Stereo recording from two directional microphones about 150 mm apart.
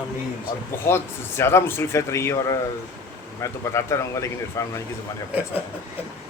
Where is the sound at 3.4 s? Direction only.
20° left (ahead or behind).